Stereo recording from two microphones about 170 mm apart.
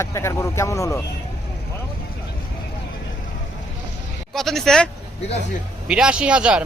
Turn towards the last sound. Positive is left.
turn(degrees=-5)  # may be behind; listen again after turning